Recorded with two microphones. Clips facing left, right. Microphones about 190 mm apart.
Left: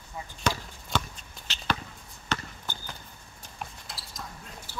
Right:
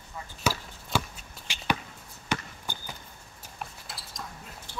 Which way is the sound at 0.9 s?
10° right (ahead or behind).